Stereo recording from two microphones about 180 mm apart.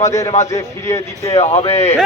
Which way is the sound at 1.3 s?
35° left (ahead or behind).